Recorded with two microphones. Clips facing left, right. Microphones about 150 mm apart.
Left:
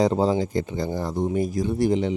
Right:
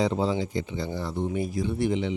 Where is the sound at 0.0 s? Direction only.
40° left (ahead or behind).